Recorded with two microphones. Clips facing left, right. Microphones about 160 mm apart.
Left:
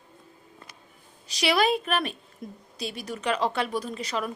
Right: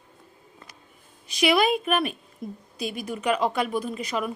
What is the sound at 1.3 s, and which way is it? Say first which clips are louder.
Speech: right 4 dB; 35° left (ahead or behind).